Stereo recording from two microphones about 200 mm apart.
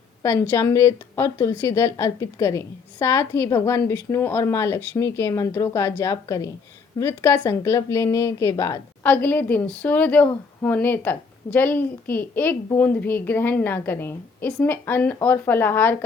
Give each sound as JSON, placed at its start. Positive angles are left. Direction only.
{"t": 0.2, "sound": "a woman's voice", "side_deg": 15}